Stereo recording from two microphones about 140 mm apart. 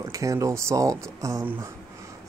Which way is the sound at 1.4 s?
15° right (ahead or behind).